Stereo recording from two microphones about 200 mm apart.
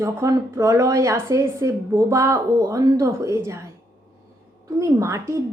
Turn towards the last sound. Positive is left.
turn(degrees=-15)  # may be behind; listen again after turning